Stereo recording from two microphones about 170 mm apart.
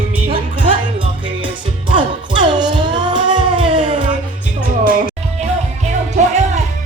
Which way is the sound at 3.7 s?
50° right (ahead or behind).